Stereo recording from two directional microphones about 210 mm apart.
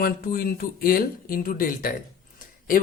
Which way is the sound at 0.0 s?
45° left (ahead or behind).